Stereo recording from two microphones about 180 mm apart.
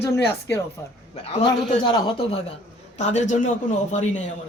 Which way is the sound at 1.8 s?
30° left (ahead or behind).